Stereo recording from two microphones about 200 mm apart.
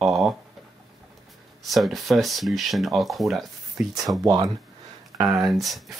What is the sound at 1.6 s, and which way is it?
Speech, centre (ahead or behind).